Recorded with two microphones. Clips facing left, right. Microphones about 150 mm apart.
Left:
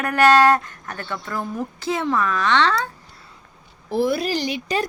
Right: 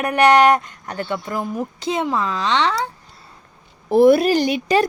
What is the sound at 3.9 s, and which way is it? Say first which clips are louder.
Speech: right 9 dB; 60° right (ahead or behind).